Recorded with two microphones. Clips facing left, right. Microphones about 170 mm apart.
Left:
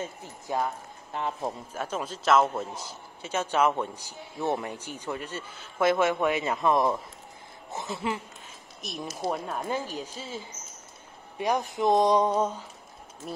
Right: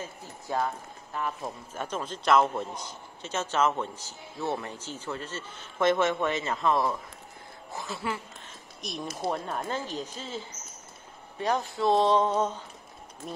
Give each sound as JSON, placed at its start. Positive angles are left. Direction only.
{"t": 0.5, "sound": "a man's voice", "side_deg": 15}
{"t": 1.7, "sound": "a man's voice", "side_deg": 10}
{"t": 8.8, "sound": "a man's voice", "side_deg": 5}